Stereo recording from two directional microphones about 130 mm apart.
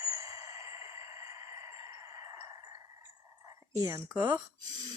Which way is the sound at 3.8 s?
25° right (ahead or behind).